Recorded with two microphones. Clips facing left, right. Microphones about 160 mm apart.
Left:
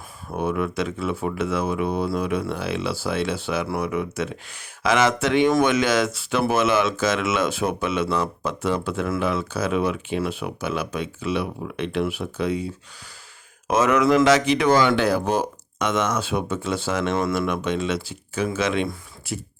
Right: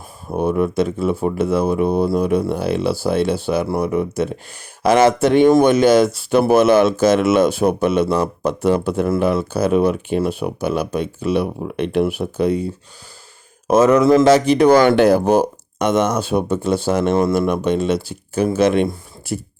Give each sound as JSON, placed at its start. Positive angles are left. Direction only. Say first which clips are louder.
{"t": 0.3, "sound": "speech", "louder": "right 7 dB", "side_deg": -40}
{"t": 5.5, "sound": "speech", "louder": "right 8 dB", "side_deg": -35}
{"t": 13.7, "sound": "speech", "louder": "right 6 dB", "side_deg": -30}
{"t": 14.2, "sound": "speech", "louder": "right 6 dB", "side_deg": -45}
{"t": 17.2, "sound": "speech", "louder": "right 7 dB", "side_deg": -30}